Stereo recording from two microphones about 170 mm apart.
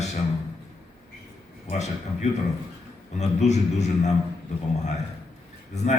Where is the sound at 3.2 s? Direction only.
40° left (ahead or behind).